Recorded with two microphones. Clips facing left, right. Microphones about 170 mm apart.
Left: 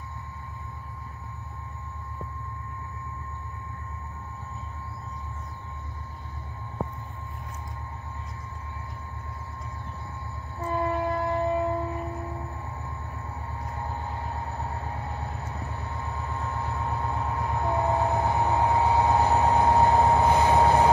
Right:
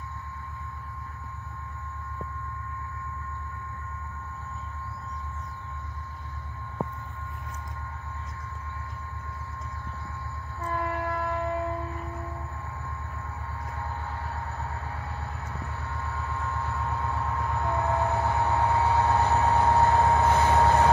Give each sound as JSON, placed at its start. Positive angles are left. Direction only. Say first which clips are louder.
{"t": 10.6, "sound": "train", "louder": "left 4 dB", "side_deg": 20}
{"t": 13.7, "sound": "train", "louder": "left 2 dB", "side_deg": 20}